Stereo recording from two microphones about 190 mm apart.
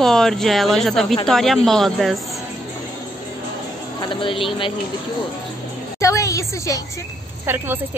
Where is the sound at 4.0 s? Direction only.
25° left (ahead or behind).